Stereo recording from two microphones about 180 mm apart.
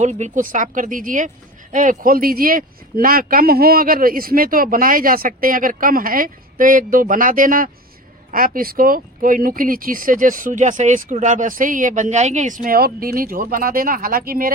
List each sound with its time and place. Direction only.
0.0 s speech: 40° right (ahead or behind)